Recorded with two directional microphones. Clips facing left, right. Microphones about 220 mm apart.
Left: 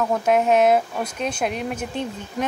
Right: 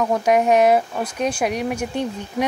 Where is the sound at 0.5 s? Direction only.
10° right (ahead or behind).